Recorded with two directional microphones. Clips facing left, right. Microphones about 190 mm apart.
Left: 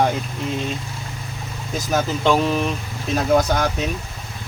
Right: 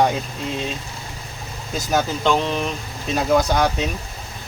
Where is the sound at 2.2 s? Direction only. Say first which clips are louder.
Left 2 dB; 5° left (ahead or behind).